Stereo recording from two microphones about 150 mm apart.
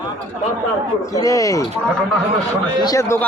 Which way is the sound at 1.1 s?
20° left (ahead or behind).